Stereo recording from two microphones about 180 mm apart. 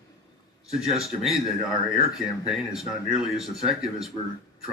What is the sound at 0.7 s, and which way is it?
Speech, 35° right (ahead or behind).